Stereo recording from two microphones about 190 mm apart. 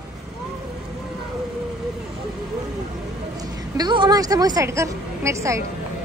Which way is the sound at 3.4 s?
20° right (ahead or behind).